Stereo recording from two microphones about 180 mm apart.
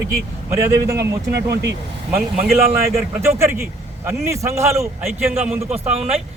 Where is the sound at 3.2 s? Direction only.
15° right (ahead or behind).